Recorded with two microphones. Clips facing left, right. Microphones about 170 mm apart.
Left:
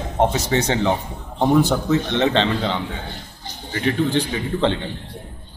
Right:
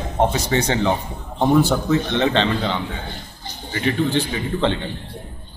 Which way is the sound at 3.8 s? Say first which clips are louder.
Even; 35° left (ahead or behind).